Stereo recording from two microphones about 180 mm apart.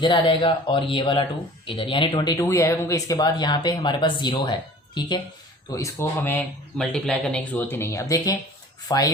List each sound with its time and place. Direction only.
0.0 s speech: 25° left (ahead or behind)